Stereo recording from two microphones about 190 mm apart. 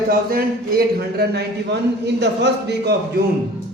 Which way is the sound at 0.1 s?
50° right (ahead or behind).